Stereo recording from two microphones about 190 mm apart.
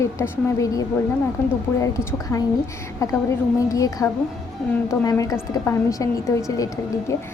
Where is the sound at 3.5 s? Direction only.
15° left (ahead or behind).